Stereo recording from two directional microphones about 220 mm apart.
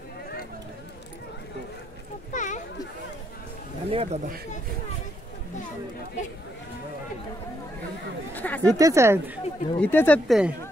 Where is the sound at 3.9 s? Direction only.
25° right (ahead or behind).